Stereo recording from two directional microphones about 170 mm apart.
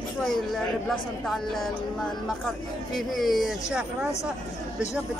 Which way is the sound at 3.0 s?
Centre (ahead or behind).